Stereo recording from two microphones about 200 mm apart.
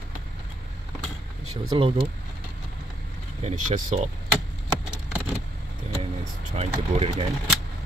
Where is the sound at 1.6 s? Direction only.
25° right (ahead or behind).